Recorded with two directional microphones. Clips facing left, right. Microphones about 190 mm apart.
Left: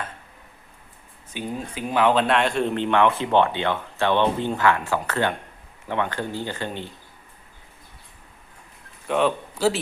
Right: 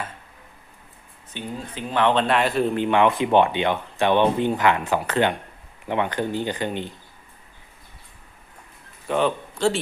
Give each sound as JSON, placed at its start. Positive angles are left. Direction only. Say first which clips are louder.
{"t": 1.3, "sound": "speech", "louder": "left 2 dB", "side_deg": 10}
{"t": 9.0, "sound": "a man's voice", "louder": "even", "side_deg": 0}